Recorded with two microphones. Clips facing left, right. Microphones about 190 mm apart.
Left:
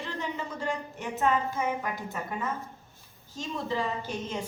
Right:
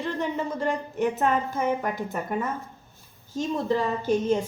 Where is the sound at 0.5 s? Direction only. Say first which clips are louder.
Right 7 dB; 55° right (ahead or behind).